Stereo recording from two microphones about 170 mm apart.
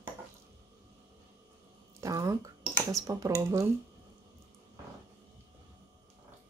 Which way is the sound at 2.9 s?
20° right (ahead or behind).